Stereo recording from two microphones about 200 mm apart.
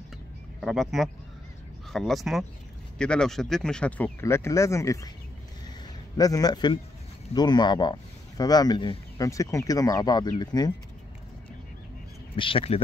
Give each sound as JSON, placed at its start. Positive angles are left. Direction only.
{"t": 0.6, "sound": "speech", "side_deg": 0}
{"t": 6.1, "sound": "speech", "side_deg": 20}
{"t": 12.4, "sound": "speech", "side_deg": 25}